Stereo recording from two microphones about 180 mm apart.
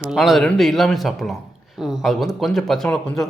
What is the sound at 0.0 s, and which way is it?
Speech, centre (ahead or behind).